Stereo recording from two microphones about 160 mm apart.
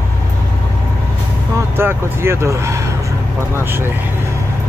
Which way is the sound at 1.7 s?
15° right (ahead or behind).